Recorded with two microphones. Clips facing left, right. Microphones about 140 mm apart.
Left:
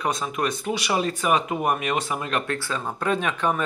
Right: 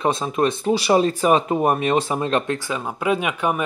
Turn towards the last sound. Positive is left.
turn(degrees=-10)  # may be behind; listen again after turning